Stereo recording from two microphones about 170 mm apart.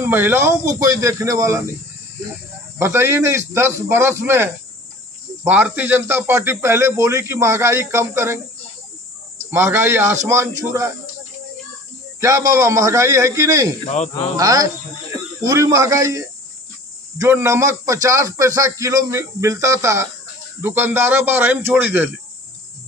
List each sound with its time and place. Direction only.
0.0 s speech: 10° right (ahead or behind)
2.8 s speech: 15° right (ahead or behind)
9.5 s speech: 15° right (ahead or behind)
12.2 s speech: 20° right (ahead or behind)